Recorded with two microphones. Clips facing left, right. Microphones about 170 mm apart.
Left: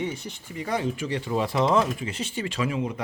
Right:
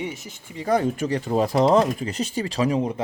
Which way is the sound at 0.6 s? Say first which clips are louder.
Right 6 dB; 40° right (ahead or behind).